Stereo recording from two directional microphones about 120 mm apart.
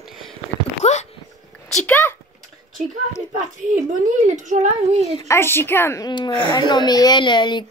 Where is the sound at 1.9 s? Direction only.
20° left (ahead or behind).